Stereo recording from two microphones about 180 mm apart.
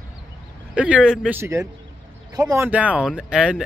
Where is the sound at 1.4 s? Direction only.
15° right (ahead or behind).